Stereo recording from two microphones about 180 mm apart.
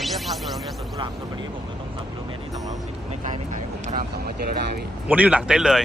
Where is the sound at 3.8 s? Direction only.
50° right (ahead or behind).